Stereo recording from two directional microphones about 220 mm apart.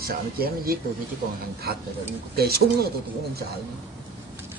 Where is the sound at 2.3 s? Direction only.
45° right (ahead or behind).